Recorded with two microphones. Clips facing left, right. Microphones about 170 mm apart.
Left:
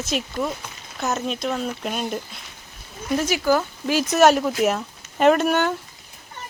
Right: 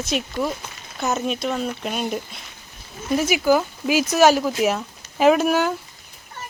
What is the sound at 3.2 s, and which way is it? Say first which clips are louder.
A child's voice: right 2 dB; 10° right (ahead or behind).